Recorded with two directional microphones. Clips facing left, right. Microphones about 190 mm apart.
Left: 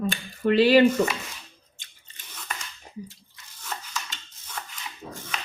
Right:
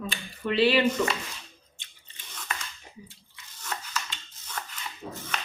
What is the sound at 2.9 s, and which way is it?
Biting, 40° left (ahead or behind).